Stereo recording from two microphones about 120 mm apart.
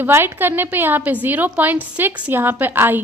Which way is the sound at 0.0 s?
15° right (ahead or behind).